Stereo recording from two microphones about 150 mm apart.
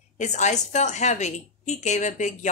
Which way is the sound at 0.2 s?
50° left (ahead or behind).